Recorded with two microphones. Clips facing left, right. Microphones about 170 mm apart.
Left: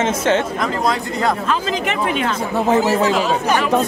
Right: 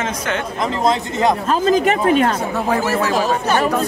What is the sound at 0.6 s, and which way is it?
Speech, 25° right (ahead or behind).